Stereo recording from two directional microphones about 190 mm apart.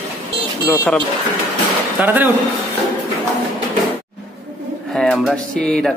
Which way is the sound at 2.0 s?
10° right (ahead or behind).